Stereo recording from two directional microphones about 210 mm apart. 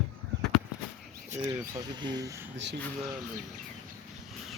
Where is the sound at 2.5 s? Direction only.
55° right (ahead or behind).